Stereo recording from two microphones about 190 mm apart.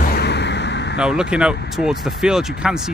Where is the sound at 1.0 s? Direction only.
5° right (ahead or behind).